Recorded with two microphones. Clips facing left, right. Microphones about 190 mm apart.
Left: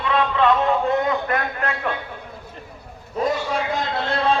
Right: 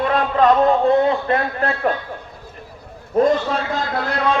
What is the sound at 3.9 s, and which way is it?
Speech, 25° left (ahead or behind).